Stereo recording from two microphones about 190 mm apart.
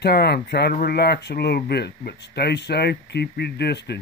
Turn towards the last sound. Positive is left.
turn(degrees=60)  # may be behind; listen again after turning